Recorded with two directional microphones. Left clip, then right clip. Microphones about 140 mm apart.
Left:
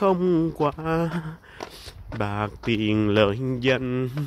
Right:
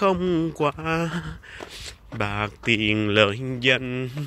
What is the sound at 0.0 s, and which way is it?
Speech, 20° left (ahead or behind).